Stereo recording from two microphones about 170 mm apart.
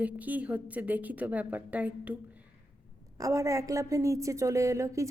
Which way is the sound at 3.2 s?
20° right (ahead or behind).